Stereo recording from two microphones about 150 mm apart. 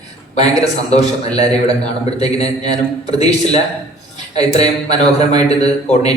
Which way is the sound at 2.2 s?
45° left (ahead or behind).